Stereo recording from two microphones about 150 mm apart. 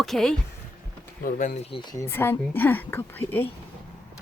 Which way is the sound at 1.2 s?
65° left (ahead or behind).